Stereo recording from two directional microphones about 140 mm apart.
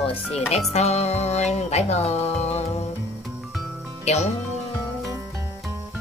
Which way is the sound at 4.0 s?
50° left (ahead or behind).